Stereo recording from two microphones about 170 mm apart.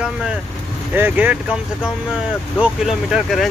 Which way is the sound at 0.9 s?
10° right (ahead or behind).